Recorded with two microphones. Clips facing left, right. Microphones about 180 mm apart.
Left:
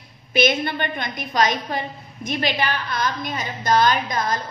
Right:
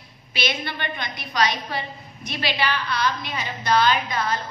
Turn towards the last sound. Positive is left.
turn(degrees=40)  # may be behind; listen again after turning